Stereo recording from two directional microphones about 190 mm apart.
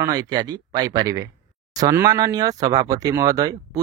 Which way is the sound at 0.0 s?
20° right (ahead or behind).